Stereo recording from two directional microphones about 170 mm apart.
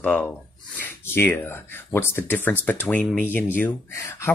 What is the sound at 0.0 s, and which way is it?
Speech, 10° left (ahead or behind).